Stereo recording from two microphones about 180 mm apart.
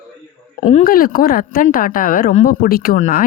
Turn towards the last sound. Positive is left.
turn(degrees=45)  # may be behind; listen again after turning